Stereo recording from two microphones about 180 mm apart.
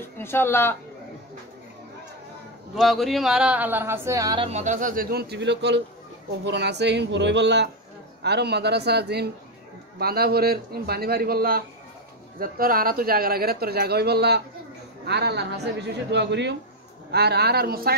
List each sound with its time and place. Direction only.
0.0 s speech: 15° left (ahead or behind)
2.7 s speech: centre (ahead or behind); by 4.5 s 20° right (ahead or behind)
4.5 s a woman's voice: 40° right (ahead or behind); by 16.5 s 75° right (ahead or behind)
17.1 s speech: 65° right (ahead or behind)